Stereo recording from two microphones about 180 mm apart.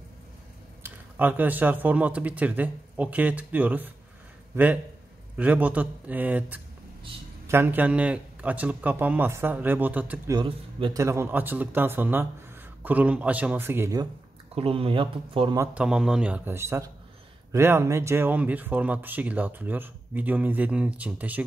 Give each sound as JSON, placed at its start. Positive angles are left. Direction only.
{"t": 0.8, "sound": "speech", "side_deg": -10}
{"t": 10.3, "sound": "speech", "side_deg": -25}
{"t": 14.5, "sound": "speech", "side_deg": -30}
{"t": 15.5, "sound": "speech", "side_deg": -10}